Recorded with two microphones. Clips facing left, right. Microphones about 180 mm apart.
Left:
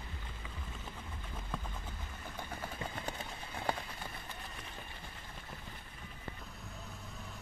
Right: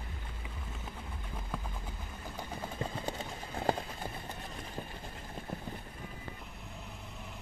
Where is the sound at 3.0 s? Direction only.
40° right (ahead or behind).